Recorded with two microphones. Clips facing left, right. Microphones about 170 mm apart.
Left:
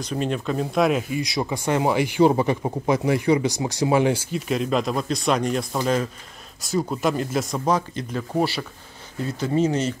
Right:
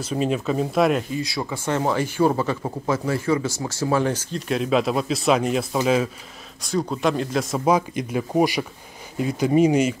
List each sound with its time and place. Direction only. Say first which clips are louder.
0.0 s speech: right 2 dB; 5° right (ahead or behind)
1.1 s speech: left 2 dB; 15° left (ahead or behind)
4.5 s speech: right 2 dB; centre (ahead or behind)
7.6 s speech: right 3 dB; 10° right (ahead or behind)